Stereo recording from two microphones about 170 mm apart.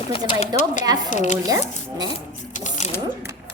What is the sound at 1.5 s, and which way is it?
Speech, 20° right (ahead or behind).